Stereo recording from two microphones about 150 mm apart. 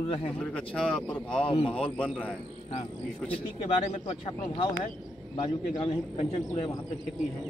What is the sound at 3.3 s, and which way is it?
Speech, 45° left (ahead or behind).